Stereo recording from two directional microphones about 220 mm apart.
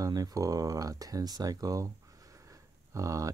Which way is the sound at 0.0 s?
15° right (ahead or behind).